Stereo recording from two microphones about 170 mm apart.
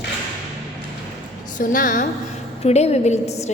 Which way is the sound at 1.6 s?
50° left (ahead or behind).